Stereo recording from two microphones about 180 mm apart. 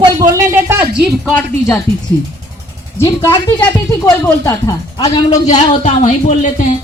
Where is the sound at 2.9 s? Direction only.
15° left (ahead or behind).